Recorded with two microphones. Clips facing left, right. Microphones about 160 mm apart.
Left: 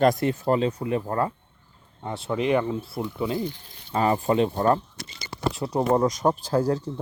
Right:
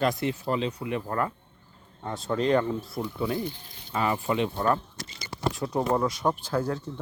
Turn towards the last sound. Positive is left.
turn(degrees=35)  # may be behind; listen again after turning